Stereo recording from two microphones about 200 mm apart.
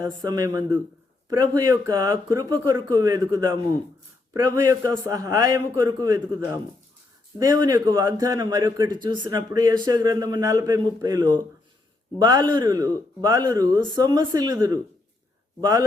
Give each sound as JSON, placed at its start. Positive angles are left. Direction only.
{"t": 0.0, "sound": "a man's voice", "side_deg": -20}